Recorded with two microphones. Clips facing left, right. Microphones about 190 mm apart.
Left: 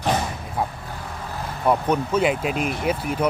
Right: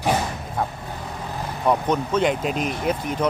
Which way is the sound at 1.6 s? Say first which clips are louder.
Left 1 dB; 5° left (ahead or behind).